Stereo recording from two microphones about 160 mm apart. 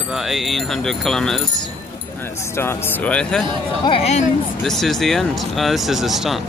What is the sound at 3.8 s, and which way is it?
Speech, 40° left (ahead or behind).